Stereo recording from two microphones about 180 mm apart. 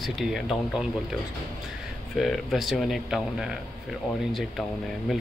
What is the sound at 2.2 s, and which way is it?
Speech, centre (ahead or behind).